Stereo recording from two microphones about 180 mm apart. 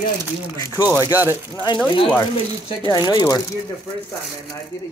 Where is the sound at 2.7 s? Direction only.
20° left (ahead or behind).